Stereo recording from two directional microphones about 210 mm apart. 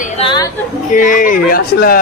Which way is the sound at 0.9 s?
40° left (ahead or behind).